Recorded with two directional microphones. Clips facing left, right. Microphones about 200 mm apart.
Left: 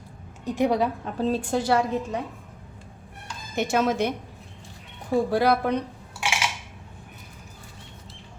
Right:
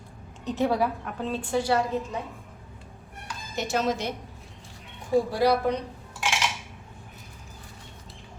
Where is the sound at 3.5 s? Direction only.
55° left (ahead or behind).